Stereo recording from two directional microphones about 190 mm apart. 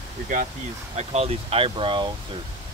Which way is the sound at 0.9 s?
35° right (ahead or behind).